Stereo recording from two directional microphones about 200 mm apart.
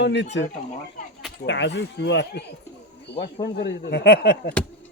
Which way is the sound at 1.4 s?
60° left (ahead or behind).